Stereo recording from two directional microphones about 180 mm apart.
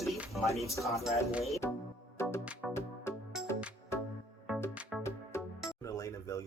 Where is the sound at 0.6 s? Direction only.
15° left (ahead or behind).